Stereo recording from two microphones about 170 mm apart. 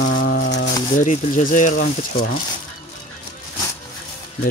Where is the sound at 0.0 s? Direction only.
55° left (ahead or behind); by 0.7 s 70° left (ahead or behind).